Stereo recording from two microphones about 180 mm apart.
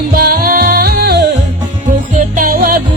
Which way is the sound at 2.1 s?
45° right (ahead or behind).